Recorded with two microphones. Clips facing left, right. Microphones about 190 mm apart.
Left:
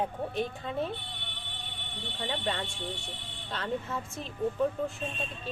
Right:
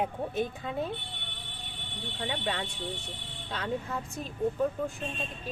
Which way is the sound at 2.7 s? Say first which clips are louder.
Right 1 dB; 20° right (ahead or behind).